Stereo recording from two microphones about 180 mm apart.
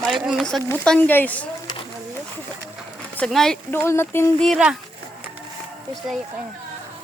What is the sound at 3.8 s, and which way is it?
Speech, 15° left (ahead or behind).